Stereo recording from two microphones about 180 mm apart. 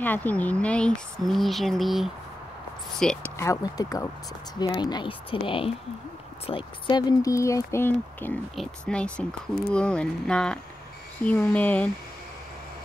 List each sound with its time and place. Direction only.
0.0 s speech: 10° left (ahead or behind)
3.3 s speech: 20° left (ahead or behind)